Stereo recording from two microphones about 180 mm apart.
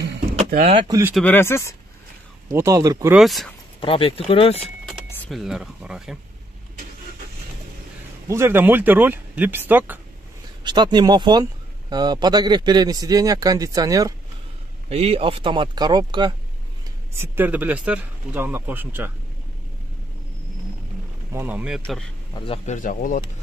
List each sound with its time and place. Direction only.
0.5 s speech: 45° right (ahead or behind)
0.7 s speech: 20° right (ahead or behind)
1.2 s speech: 10° left (ahead or behind)
2.5 s speech: 15° right (ahead or behind)
3.2 s speech: centre (ahead or behind)
3.8 s speech: 30° left (ahead or behind)
4.8 s speech: centre (ahead or behind)
8.3 s speech: 15° right (ahead or behind)
10.6 s speech: 25° right (ahead or behind)
14.9 s speech: 35° right (ahead or behind)
17.2 s speech: 10° right (ahead or behind)
21.3 s speech: 10° right (ahead or behind)
22.3 s a man's voice: 30° left (ahead or behind)
22.7 s speech: 45° left (ahead or behind)